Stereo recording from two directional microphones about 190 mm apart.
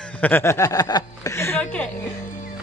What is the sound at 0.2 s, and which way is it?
A woman's voice, 10° left (ahead or behind).